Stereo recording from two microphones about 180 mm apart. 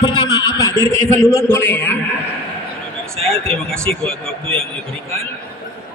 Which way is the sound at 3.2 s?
30° right (ahead or behind).